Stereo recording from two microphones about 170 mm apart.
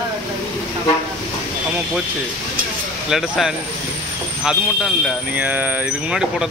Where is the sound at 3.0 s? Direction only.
Centre (ahead or behind).